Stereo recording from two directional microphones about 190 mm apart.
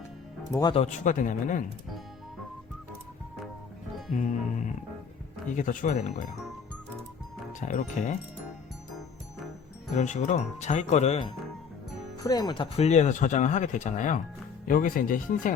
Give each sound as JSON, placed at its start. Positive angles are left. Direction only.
{"t": 0.5, "sound": "speech", "side_deg": 20}
{"t": 0.8, "sound": "speech", "side_deg": 40}
{"t": 4.1, "sound": "speech", "side_deg": 40}
{"t": 7.6, "sound": "speech", "side_deg": 40}
{"t": 9.9, "sound": "speech", "side_deg": 40}
{"t": 12.2, "sound": "speech", "side_deg": 20}